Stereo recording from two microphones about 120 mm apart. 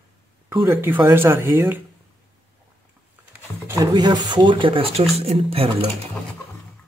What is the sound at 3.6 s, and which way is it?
Speech, 30° right (ahead or behind).